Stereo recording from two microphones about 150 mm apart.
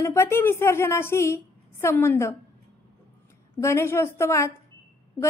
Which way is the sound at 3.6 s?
15° left (ahead or behind).